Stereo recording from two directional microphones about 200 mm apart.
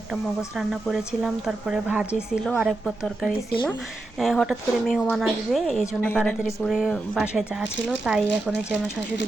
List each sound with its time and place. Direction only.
0.1 s speech: centre (ahead or behind)